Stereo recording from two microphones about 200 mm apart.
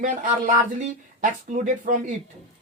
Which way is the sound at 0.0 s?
40° right (ahead or behind).